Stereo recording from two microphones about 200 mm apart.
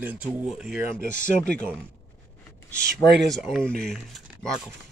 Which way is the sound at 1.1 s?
40° left (ahead or behind).